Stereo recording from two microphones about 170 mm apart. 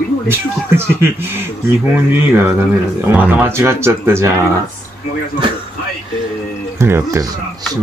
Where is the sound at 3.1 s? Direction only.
10° right (ahead or behind).